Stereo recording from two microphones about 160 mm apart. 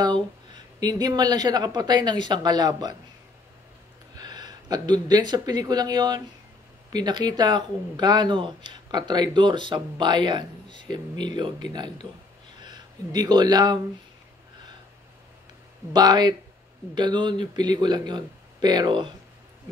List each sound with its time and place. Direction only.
0.7 s speech: 25° right (ahead or behind)
4.1 s speech: 25° right (ahead or behind)
15.9 s speech: 25° right (ahead or behind)